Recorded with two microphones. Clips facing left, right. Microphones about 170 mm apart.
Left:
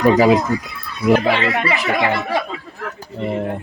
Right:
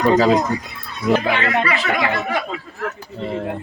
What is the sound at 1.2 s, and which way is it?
Speech, 30° left (ahead or behind).